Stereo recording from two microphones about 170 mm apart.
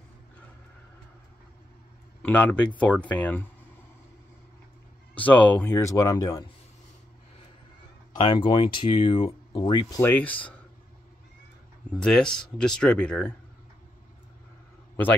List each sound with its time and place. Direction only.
2.2 s speech: 10° left (ahead or behind)
5.1 s speech: 10° left (ahead or behind)
8.1 s speech: 30° left (ahead or behind); by 10.5 s 10° left (ahead or behind)
12.0 s speech: 5° left (ahead or behind)